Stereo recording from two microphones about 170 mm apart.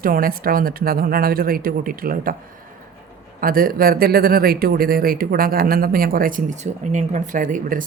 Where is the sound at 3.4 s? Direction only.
60° right (ahead or behind).